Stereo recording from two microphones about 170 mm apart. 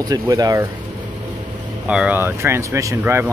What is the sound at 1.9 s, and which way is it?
Speech, 5° right (ahead or behind).